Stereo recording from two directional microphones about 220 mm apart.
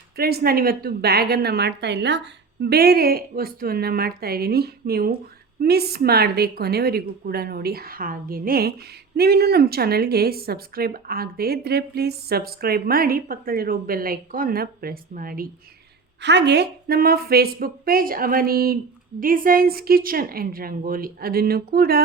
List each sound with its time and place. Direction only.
0.2 s a woman's voice: 45° right (ahead or behind)
16.2 s a woman's voice: 50° right (ahead or behind)